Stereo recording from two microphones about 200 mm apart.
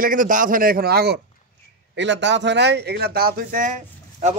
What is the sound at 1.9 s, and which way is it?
Speech, 65° right (ahead or behind).